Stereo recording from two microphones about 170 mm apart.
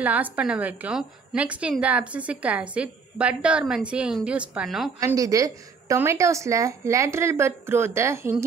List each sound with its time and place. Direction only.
0.0 s a woman's voice: 10° right (ahead or behind)
5.0 s a woman's voice: 20° right (ahead or behind)